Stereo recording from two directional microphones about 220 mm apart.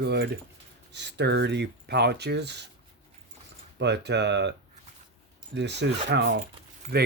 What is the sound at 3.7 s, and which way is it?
Speech, 50° right (ahead or behind).